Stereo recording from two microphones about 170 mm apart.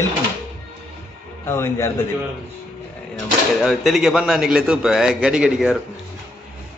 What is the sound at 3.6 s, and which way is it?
A man's voice, centre (ahead or behind).